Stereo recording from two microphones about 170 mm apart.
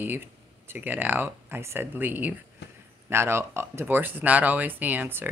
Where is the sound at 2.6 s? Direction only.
90° left.